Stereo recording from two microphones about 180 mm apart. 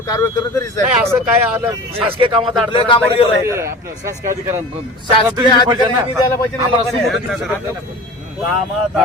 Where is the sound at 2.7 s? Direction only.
30° left (ahead or behind).